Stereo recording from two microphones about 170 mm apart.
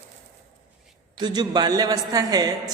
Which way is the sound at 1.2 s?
25° right (ahead or behind).